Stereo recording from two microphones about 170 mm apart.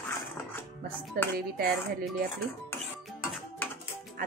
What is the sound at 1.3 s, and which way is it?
Speech, 60° right (ahead or behind).